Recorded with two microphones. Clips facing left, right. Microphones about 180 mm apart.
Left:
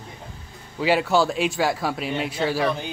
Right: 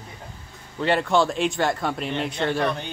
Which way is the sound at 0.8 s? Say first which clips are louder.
Left 1 dB; 5° left (ahead or behind).